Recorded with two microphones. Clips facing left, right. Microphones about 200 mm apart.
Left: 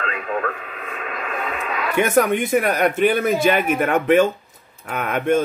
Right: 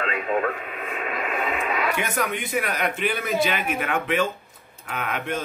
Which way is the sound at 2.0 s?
50° left (ahead or behind).